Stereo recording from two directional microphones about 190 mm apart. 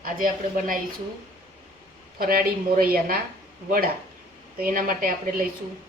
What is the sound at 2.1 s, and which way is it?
A woman's voice, 50° right (ahead or behind).